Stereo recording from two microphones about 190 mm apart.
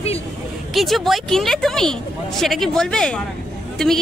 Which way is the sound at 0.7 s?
Centre (ahead or behind).